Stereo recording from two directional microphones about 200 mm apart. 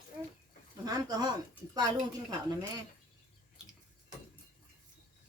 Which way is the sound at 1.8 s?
20° right (ahead or behind).